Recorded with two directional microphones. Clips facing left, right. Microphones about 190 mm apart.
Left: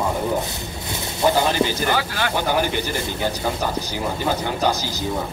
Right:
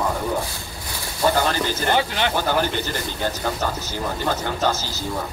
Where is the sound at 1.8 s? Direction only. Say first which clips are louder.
Right 1 dB; 25° right (ahead or behind).